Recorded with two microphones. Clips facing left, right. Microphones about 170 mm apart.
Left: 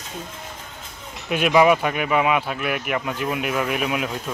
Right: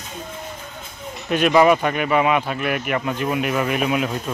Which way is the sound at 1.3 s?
5° left (ahead or behind).